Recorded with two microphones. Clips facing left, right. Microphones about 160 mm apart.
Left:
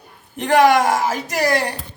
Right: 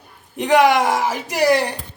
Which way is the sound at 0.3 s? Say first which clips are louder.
Left 1 dB; 15° right (ahead or behind).